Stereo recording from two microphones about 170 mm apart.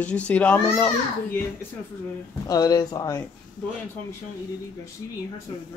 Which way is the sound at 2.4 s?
20° left (ahead or behind).